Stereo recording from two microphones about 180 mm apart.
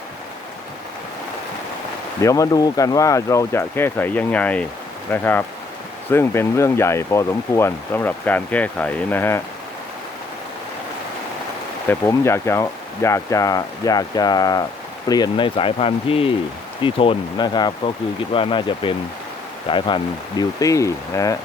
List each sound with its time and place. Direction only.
2.2 s speech: 20° left (ahead or behind)
11.9 s speech: 15° left (ahead or behind)
20.6 s speech: 20° left (ahead or behind)